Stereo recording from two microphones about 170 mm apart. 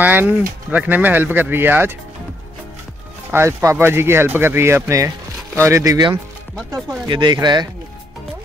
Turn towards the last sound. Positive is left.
turn(degrees=-25)  # may be behind; listen again after turning